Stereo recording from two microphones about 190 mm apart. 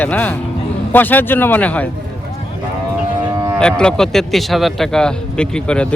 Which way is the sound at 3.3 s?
15° right (ahead or behind).